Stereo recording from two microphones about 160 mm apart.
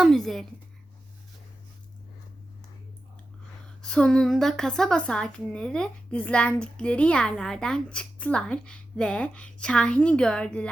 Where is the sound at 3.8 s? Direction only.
5° left (ahead or behind).